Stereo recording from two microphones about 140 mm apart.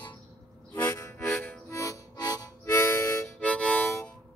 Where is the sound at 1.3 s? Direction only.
20° left (ahead or behind).